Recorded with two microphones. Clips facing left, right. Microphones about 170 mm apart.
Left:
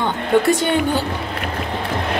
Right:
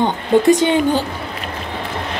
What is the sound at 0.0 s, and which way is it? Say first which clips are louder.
A woman's voice: right 3 dB; 20° right (ahead or behind).